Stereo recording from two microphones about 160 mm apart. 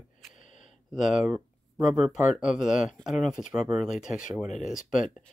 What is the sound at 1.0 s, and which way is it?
Speech, 50° left (ahead or behind).